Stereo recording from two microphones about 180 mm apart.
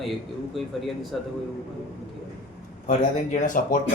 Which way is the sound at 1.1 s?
Centre (ahead or behind).